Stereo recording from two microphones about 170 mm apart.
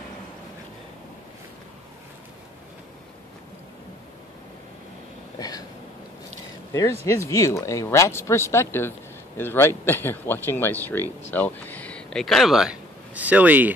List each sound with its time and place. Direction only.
6.7 s speech: 20° left (ahead or behind); by 13.7 s 10° right (ahead or behind)